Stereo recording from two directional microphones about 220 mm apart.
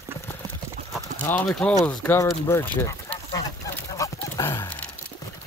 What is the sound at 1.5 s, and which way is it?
Speech, centre (ahead or behind).